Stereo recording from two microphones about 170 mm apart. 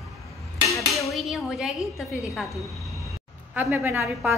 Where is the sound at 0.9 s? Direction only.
Centre (ahead or behind).